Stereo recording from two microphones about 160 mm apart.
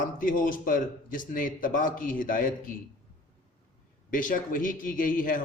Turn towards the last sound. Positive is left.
turn(degrees=60)  # may be behind; listen again after turning